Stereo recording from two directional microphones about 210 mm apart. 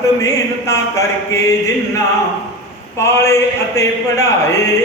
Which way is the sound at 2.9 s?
15° left (ahead or behind).